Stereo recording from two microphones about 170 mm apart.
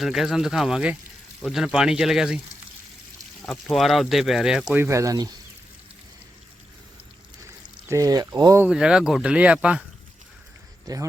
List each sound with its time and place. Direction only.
0.0 s speech: centre (ahead or behind)
3.4 s speech: centre (ahead or behind)
4.7 s speech: 15° right (ahead or behind)
7.9 s speech: 20° right (ahead or behind)
8.6 s speech: 5° right (ahead or behind)